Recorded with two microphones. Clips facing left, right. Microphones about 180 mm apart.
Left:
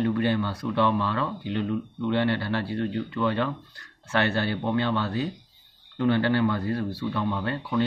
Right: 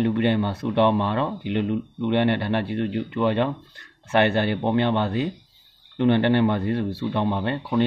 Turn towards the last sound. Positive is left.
turn(degrees=-25)  # may be behind; listen again after turning